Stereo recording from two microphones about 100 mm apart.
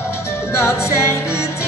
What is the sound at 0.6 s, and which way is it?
Music, 25° left (ahead or behind).